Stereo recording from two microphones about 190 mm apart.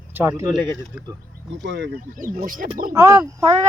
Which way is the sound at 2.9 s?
15° right (ahead or behind).